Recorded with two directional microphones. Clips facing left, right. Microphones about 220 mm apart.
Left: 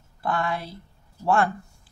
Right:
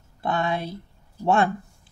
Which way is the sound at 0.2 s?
20° right (ahead or behind).